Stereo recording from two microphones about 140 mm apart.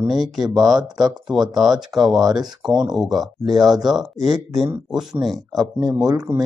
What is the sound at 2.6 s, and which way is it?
Speech, 30° right (ahead or behind).